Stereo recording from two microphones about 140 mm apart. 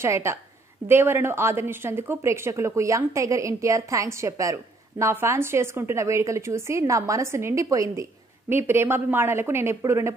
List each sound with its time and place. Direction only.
0.0 s a woman's voice: 20° right (ahead or behind)